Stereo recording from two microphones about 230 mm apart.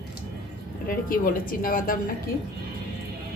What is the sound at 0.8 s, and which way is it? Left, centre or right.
A woman's voice, left.